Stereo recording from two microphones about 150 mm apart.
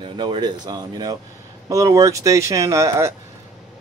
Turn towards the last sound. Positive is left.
turn(degrees=-20)  # may be behind; listen again after turning